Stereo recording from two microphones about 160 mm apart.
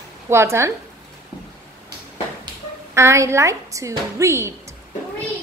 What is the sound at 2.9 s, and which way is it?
A woman's voice, 15° right (ahead or behind).